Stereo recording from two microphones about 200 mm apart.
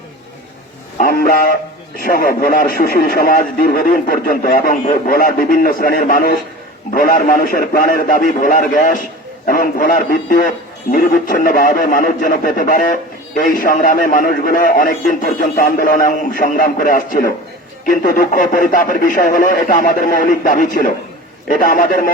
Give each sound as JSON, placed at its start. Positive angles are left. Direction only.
{"t": 0.9, "sound": "a man's voice", "side_deg": 50}